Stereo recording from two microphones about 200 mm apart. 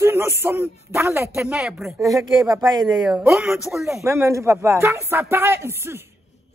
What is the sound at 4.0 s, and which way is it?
A man's voice, 15° right (ahead or behind).